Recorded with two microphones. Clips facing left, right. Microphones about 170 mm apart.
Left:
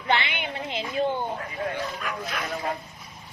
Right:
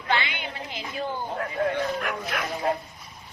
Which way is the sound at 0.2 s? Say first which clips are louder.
Left 1 dB; 25° left (ahead or behind).